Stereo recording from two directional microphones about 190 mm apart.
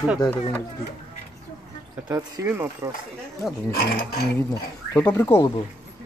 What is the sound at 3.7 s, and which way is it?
Speech, 50° left (ahead or behind).